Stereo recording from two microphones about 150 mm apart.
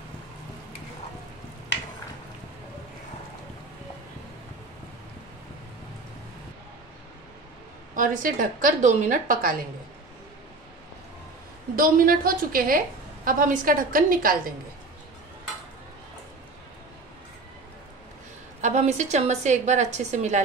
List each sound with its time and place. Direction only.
7.9 s a woman's voice: 60° right (ahead or behind)
11.7 s a woman's voice: 70° right (ahead or behind)
18.6 s a woman's voice: 50° right (ahead or behind)